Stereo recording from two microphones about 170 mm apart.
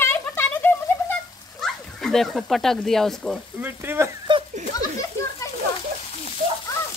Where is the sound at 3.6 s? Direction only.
15° right (ahead or behind).